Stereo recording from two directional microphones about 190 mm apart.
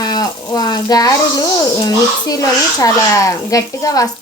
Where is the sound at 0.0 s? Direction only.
20° left (ahead or behind).